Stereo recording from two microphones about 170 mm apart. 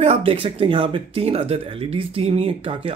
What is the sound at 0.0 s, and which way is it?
Speech, 35° right (ahead or behind).